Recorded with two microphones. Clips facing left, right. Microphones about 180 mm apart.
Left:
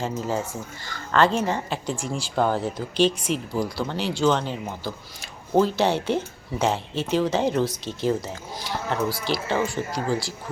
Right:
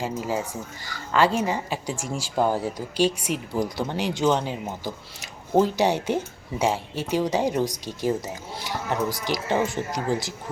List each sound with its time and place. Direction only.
0.0 s speech: 10° right (ahead or behind)